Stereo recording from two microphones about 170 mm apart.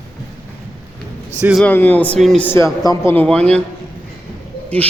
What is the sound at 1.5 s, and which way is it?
Speech, 10° left (ahead or behind).